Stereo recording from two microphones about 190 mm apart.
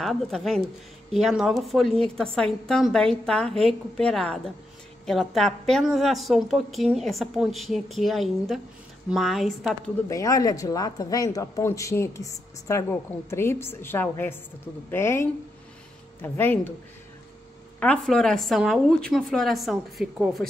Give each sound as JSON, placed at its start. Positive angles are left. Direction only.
{"t": 0.0, "sound": "a woman's voice", "side_deg": 0}
{"t": 10.0, "sound": "speech", "side_deg": 15}
{"t": 17.7, "sound": "a woman's voice", "side_deg": 5}